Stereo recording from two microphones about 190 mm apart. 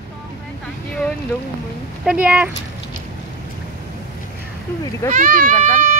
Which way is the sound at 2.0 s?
5° right (ahead or behind).